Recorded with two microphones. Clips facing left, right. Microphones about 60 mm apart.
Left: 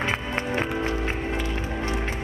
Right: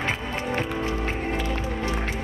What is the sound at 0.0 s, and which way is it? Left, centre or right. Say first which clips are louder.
Music: left 1 dB; left.